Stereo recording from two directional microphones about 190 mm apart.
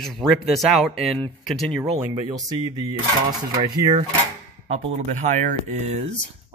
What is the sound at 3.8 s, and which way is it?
Speech, 25° right (ahead or behind).